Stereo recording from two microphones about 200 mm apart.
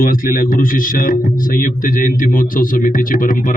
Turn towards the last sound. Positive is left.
turn(degrees=40)  # may be behind; listen again after turning